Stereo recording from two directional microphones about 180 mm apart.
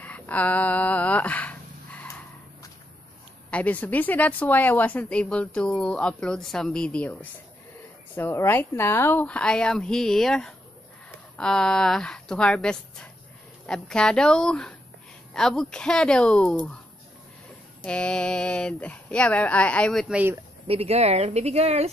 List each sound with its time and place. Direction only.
0.0 s a sound: 10° left (ahead or behind)
3.4 s a woman's voice: 10° left (ahead or behind)
17.8 s a woman's voice: 5° left (ahead or behind)
20.6 s speech: 35° right (ahead or behind)